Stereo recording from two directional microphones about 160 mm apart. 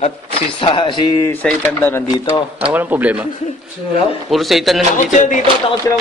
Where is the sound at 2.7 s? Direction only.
10° right (ahead or behind).